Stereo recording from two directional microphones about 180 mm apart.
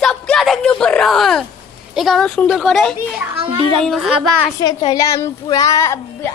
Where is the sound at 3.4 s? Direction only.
30° right (ahead or behind).